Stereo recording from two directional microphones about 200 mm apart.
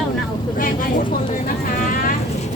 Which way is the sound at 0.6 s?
45° left (ahead or behind).